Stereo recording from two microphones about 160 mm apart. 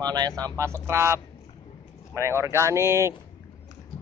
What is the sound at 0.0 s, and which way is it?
Speech, 25° right (ahead or behind).